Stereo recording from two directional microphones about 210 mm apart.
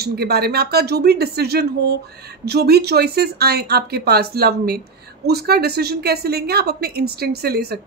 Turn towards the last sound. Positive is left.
turn(degrees=-50)  # may be behind; listen again after turning